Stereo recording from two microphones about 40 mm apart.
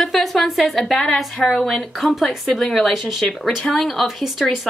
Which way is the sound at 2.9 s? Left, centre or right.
Centre.